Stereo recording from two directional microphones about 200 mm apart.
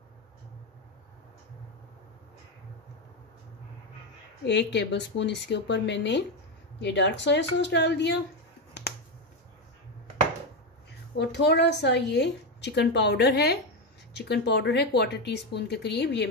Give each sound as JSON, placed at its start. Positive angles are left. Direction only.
{"t": 4.5, "sound": "a woman's voice", "side_deg": 60}
{"t": 8.8, "sound": "finger snapping", "side_deg": 55}
{"t": 11.1, "sound": "a woman's voice", "side_deg": 60}